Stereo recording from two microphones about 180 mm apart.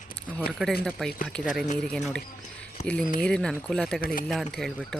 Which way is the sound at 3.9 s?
55° left (ahead or behind).